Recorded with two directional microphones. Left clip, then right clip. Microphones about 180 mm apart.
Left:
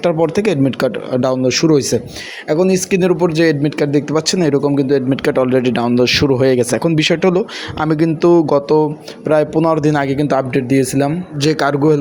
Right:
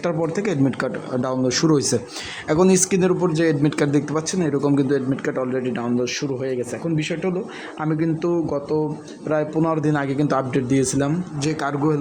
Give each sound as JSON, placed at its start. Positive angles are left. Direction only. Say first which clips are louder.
{"t": 0.0, "sound": "speech", "louder": "left 8 dB", "side_deg": 20}
{"t": 2.9, "sound": "a man's voice", "louder": "left 6 dB", "side_deg": 20}
{"t": 4.6, "sound": "a man's voice", "louder": "left 5 dB", "side_deg": 15}
{"t": 5.1, "sound": "speech", "louder": "left 10 dB", "side_deg": 30}
{"t": 9.3, "sound": "a man's voice", "louder": "left 8 dB", "side_deg": 20}